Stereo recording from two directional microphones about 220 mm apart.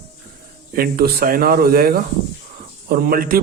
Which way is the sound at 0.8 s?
45° right (ahead or behind).